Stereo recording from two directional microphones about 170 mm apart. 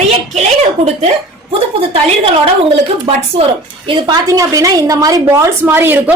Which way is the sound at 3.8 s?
25° right (ahead or behind).